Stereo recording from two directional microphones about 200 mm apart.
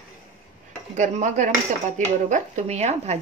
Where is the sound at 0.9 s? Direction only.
40° right (ahead or behind).